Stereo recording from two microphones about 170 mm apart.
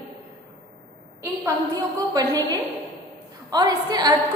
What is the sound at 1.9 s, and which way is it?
Speech, 20° right (ahead or behind).